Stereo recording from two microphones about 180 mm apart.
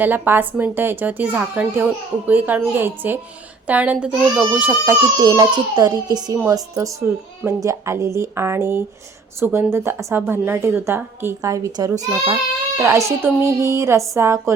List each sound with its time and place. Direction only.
0.0 s a woman's voice: 10° right (ahead or behind)